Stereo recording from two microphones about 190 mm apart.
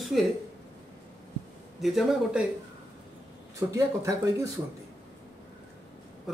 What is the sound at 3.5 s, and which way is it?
Speech, 15° right (ahead or behind).